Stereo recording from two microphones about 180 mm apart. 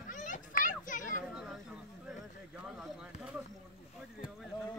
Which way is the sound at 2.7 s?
5° right (ahead or behind).